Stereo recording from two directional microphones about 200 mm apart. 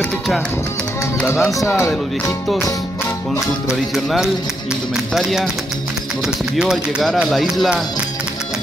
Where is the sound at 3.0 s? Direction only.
10° left (ahead or behind).